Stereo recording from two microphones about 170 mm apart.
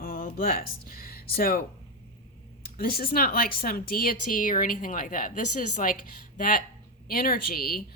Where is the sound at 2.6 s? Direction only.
60° left (ahead or behind).